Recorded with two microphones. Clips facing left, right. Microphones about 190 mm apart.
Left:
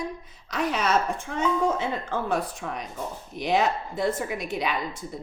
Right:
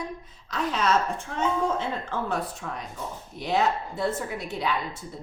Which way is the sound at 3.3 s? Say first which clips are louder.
Left 1 dB; 15° left (ahead or behind).